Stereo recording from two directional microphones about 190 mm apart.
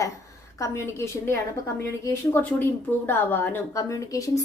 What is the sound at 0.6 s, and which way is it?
A woman's voice, 15° left (ahead or behind).